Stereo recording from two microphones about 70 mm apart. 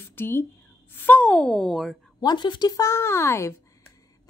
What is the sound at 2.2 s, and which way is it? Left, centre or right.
Speech, left.